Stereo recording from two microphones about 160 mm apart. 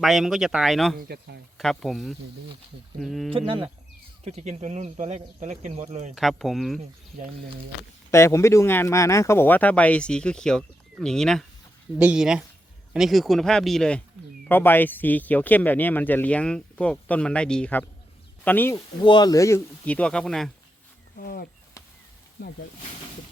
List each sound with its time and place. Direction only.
0.0 s speech: centre (ahead or behind)
0.9 s speech: 80° right
1.5 s speech: centre (ahead or behind)
3.3 s speech: 35° right (ahead or behind)
6.1 s speech: centre (ahead or behind)
8.1 s speech: 15° left (ahead or behind)
19.0 s speech: 25° left (ahead or behind); by 20.5 s 5° left (ahead or behind)
21.2 s speech: 70° left (ahead or behind)
22.4 s speech: 90° left